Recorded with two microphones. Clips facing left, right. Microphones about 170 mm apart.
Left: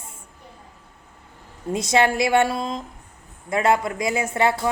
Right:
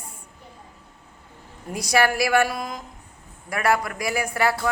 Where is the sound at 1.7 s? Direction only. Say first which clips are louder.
Left 2 dB; 25° left (ahead or behind).